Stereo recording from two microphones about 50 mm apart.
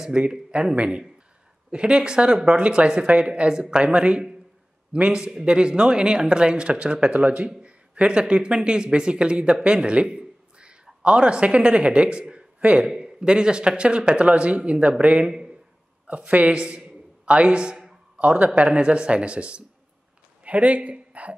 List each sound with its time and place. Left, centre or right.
0.1 s speech: right
15.2 s a man's voice: centre
16.3 s a man's voice: right
18.1 s speech: right